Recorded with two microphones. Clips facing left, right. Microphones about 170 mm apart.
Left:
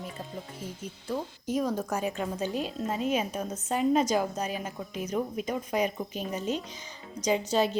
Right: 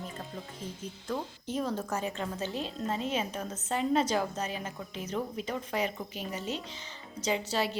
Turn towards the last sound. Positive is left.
turn(degrees=20)  # may be behind; listen again after turning